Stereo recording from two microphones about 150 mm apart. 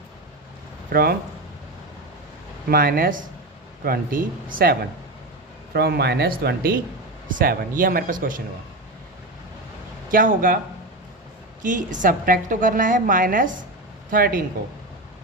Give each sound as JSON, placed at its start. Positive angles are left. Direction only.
{"t": 2.6, "sound": "speech", "side_deg": -80}
{"t": 5.7, "sound": "speech", "side_deg": -90}
{"t": 7.3, "sound": "a woman's voice", "side_deg": -65}
{"t": 10.1, "sound": "speech", "side_deg": -70}
{"t": 11.6, "sound": "a woman's voice", "side_deg": -60}